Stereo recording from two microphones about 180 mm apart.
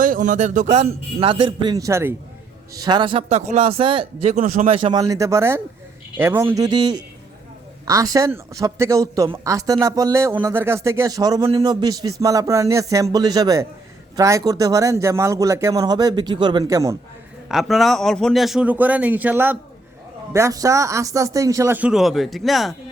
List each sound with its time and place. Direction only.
0.0 s a man's voice: 45° right (ahead or behind); by 17.0 s 15° right (ahead or behind)
17.5 s a man's voice: centre (ahead or behind)